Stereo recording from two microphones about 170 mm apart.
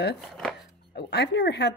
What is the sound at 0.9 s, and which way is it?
Speech, 75° left (ahead or behind).